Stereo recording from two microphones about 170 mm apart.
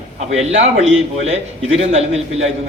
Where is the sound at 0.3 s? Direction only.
35° right (ahead or behind).